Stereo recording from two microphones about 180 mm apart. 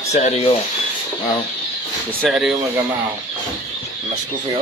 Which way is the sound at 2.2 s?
5° right (ahead or behind).